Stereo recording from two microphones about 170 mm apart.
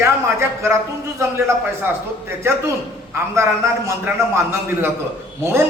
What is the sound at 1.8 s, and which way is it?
A man's voice, 15° right (ahead or behind).